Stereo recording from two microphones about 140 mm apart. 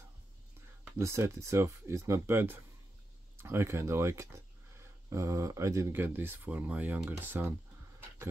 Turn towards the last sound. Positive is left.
turn(degrees=-15)  # may be behind; listen again after turning